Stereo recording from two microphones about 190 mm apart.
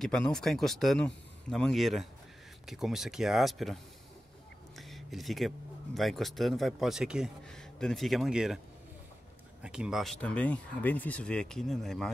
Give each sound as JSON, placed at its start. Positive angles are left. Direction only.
{"t": 0.0, "sound": "speech", "side_deg": 5}
{"t": 4.7, "sound": "a sound", "side_deg": 0}
{"t": 5.9, "sound": "speech", "side_deg": 0}
{"t": 9.6, "sound": "speech", "side_deg": -5}